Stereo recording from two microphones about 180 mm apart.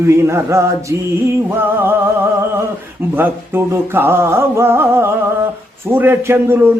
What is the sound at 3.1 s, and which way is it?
A man's voice, 10° right (ahead or behind).